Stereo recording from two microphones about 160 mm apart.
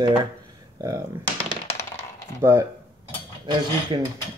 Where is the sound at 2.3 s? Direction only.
15° right (ahead or behind).